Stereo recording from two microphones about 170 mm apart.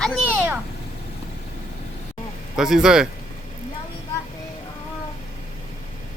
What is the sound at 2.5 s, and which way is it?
Speech, 5° right (ahead or behind).